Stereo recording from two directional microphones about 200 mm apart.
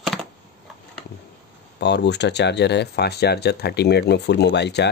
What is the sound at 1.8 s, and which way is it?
Speech, 60° left (ahead or behind).